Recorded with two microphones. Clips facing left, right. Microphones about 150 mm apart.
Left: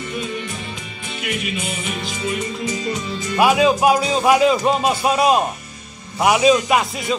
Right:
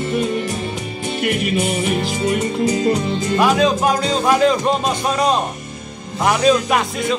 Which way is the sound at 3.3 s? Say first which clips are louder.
Left 1 dB; 10° left (ahead or behind).